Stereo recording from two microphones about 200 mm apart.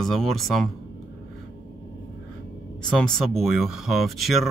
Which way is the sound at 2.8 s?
5° left (ahead or behind).